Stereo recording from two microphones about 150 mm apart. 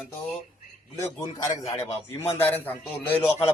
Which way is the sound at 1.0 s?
25° left (ahead or behind).